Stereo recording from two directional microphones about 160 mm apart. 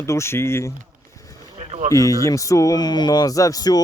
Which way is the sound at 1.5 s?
45° right (ahead or behind).